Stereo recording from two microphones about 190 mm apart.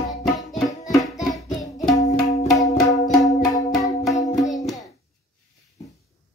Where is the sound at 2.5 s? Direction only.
20° left (ahead or behind).